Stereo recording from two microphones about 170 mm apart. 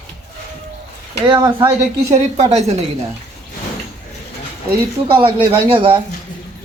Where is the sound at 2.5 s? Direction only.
40° right (ahead or behind).